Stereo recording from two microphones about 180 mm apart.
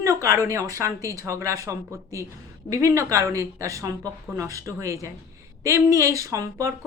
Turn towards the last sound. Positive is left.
turn(degrees=-15)  # may be behind; listen again after turning